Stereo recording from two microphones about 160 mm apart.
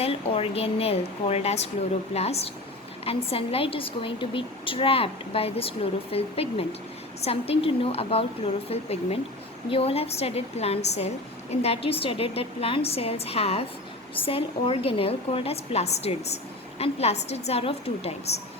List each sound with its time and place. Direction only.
0.0 s a woman's voice: 35° left (ahead or behind)